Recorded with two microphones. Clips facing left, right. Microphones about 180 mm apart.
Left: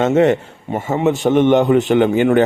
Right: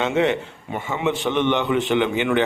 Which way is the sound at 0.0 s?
45° left (ahead or behind).